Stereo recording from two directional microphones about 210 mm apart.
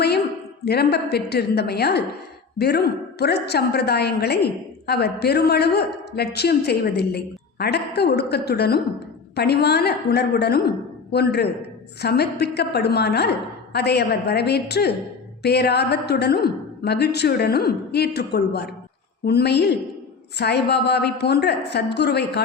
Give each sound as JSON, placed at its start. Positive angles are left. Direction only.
{"t": 0.6, "sound": "a woman's voice", "side_deg": 50}